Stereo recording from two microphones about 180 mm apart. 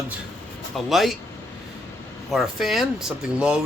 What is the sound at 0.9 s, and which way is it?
Speech, centre (ahead or behind).